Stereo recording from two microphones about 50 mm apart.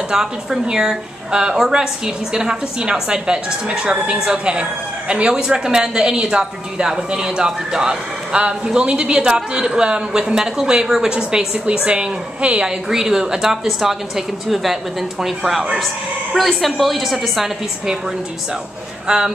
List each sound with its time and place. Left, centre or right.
0.1 s a woman's voice: centre
12.6 s a woman's voice: centre
19.0 s a woman's voice: centre